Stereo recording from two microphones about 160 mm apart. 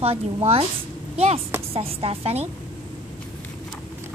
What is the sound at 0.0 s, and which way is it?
A woman's voice, 40° right (ahead or behind).